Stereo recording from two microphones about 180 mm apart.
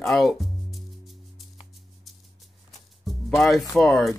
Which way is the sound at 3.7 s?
Centre (ahead or behind).